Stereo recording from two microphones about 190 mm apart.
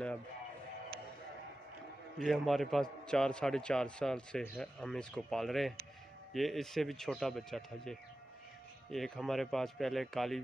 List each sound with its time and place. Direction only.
2.1 s a man's voice: centre (ahead or behind)